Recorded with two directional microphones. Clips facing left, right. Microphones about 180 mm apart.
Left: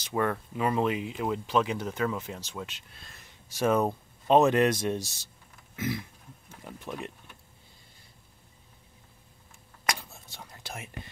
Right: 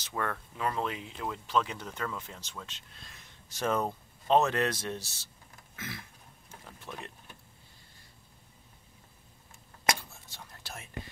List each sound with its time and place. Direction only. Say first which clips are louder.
0.0 s speech: left 7 dB; 15° left (ahead or behind)
5.8 s a sound: left 11 dB; 20° left (ahead or behind)
6.6 s speech: left 7 dB; 15° left (ahead or behind)
10.3 s whispering: left 4 dB; 15° left (ahead or behind)